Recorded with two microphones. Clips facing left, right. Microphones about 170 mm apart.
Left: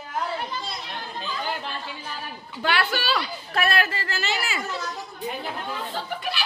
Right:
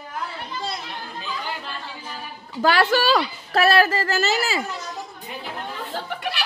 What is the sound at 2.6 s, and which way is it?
A woman's voice, 40° right (ahead or behind).